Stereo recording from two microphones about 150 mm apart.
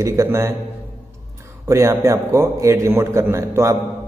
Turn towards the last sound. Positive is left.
turn(degrees=-20)  # may be behind; listen again after turning